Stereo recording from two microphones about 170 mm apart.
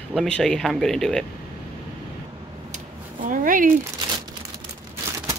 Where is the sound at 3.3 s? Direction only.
55° right (ahead or behind).